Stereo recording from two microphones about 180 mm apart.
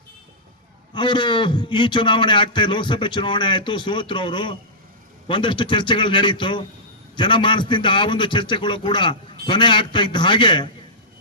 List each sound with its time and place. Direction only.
0.9 s a man's voice: 25° left (ahead or behind)